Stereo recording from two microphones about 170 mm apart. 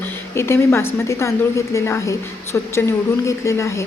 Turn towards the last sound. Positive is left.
turn(degrees=15)  # may be behind; listen again after turning